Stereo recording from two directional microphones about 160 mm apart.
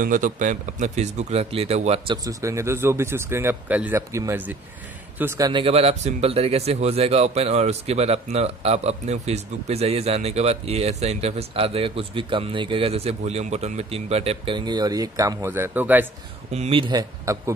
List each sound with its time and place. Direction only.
0.0 s speech: 55° right (ahead or behind); by 2.1 s 40° right (ahead or behind)
2.2 s speech: 20° right (ahead or behind)
5.5 s speech: 35° right (ahead or behind); by 16.1 s 10° right (ahead or behind)
16.5 s speech: 35° right (ahead or behind)
17.3 s a man's voice: 20° right (ahead or behind)